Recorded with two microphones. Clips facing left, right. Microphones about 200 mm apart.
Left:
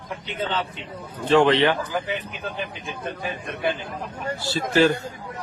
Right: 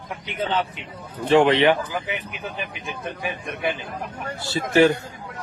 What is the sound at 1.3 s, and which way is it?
A man's voice, 20° right (ahead or behind).